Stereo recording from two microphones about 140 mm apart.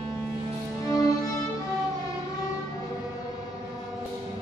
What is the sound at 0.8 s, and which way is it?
Music, 25° left (ahead or behind).